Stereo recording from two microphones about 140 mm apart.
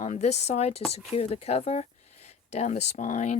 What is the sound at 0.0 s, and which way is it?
Speech, 55° left (ahead or behind).